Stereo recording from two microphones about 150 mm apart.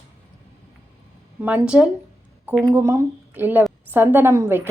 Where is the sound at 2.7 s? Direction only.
20° right (ahead or behind).